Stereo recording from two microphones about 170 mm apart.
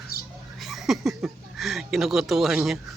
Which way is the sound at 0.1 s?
65° left (ahead or behind).